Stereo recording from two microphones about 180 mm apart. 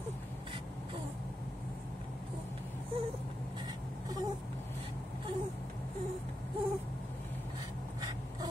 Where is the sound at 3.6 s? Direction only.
20° right (ahead or behind).